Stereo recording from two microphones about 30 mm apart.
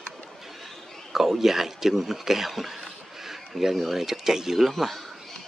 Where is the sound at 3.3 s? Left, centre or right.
Centre.